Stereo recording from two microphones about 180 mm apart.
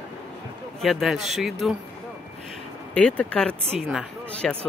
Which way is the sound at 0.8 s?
Centre (ahead or behind).